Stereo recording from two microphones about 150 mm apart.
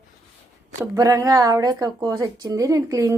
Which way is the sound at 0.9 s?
20° right (ahead or behind).